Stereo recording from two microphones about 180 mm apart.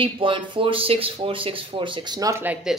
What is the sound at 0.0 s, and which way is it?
Speech, 30° right (ahead or behind).